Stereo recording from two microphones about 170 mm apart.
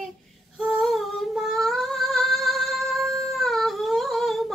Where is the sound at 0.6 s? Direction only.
Centre (ahead or behind).